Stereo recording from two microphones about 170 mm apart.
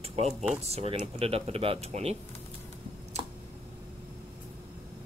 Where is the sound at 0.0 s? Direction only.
35° right (ahead or behind).